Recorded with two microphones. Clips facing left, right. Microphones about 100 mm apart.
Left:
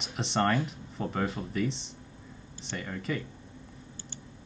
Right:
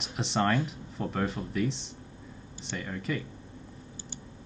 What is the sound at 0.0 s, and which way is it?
Speech, centre (ahead or behind).